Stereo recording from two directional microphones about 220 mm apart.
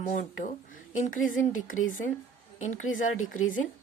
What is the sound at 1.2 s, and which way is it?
Speech, 65° left (ahead or behind).